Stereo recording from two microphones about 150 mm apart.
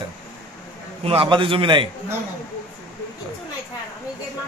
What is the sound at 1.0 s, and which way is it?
Speech, 40° right (ahead or behind).